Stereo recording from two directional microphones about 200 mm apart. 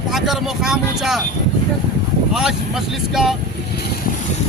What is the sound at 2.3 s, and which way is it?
Speech, centre (ahead or behind).